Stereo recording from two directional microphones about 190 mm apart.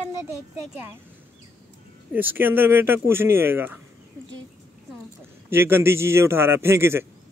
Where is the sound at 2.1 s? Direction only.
10° right (ahead or behind).